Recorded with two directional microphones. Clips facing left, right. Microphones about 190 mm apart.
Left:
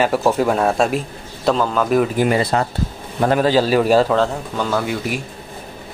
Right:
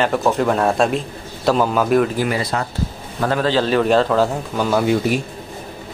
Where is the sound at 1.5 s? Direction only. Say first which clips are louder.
Right 1 dB; 10° right (ahead or behind).